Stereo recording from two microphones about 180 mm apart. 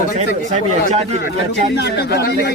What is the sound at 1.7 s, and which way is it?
Speech, 65° left (ahead or behind).